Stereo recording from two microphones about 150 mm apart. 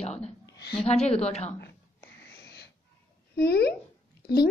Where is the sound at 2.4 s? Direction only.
90° left.